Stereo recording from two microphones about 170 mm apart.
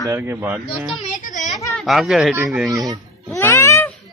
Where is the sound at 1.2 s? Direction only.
45° left (ahead or behind).